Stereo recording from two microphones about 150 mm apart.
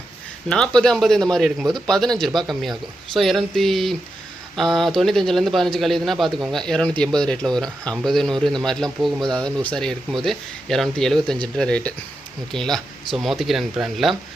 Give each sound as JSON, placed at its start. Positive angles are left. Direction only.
{"t": 0.4, "sound": "a man's voice", "side_deg": 5}